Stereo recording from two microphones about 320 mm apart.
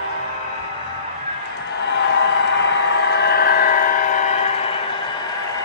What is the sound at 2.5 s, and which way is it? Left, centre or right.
Vehicle, left.